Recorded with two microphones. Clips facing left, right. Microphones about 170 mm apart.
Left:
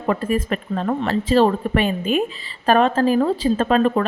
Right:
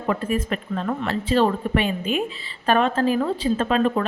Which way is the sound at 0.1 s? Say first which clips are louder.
Left 3 dB; 45° left (ahead or behind).